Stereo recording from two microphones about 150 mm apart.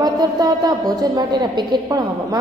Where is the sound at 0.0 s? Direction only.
25° right (ahead or behind).